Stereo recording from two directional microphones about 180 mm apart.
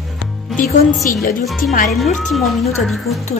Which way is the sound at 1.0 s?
50° left (ahead or behind).